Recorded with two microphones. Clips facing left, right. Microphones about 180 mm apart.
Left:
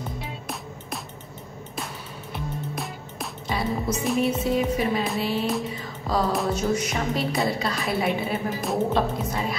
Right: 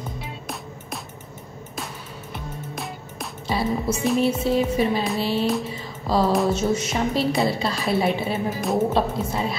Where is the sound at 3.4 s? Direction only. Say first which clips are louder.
Right 3 dB; 30° right (ahead or behind).